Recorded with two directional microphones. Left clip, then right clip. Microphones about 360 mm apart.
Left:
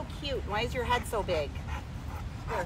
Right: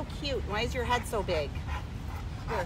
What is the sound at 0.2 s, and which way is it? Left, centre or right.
Speech, centre.